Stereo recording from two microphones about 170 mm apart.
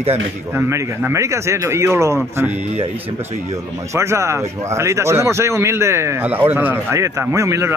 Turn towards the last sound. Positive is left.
turn(degrees=-15)  # may be behind; listen again after turning